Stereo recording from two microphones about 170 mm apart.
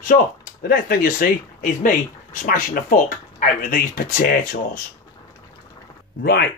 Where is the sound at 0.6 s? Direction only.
55° left (ahead or behind).